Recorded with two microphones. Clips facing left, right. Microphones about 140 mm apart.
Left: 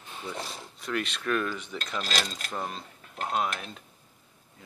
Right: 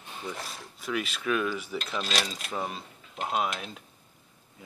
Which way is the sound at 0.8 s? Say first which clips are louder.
Even; 5° right (ahead or behind).